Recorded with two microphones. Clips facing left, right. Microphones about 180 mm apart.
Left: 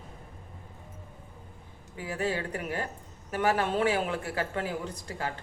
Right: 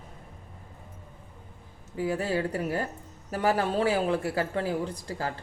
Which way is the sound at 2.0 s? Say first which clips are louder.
Right 4 dB; 35° right (ahead or behind).